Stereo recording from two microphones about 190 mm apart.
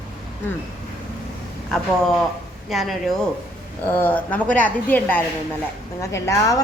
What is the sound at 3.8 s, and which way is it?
A woman's voice, 10° left (ahead or behind).